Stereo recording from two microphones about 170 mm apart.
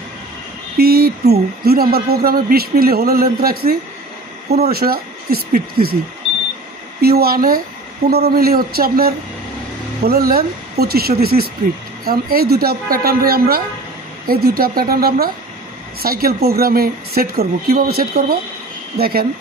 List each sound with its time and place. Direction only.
0.7 s speech: 65° right (ahead or behind)
7.0 s speech: 65° right (ahead or behind)